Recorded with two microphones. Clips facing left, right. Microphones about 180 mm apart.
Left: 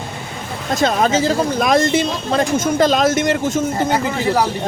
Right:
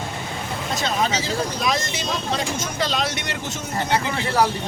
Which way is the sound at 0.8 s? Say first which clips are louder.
Left 9 dB; 50° left (ahead or behind).